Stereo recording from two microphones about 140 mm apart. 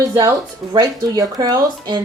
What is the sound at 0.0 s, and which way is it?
Speech, 25° right (ahead or behind).